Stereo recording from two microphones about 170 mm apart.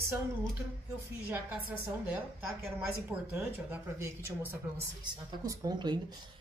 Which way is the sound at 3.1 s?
10° right (ahead or behind).